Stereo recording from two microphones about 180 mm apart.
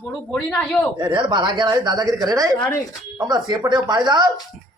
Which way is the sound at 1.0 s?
25° right (ahead or behind).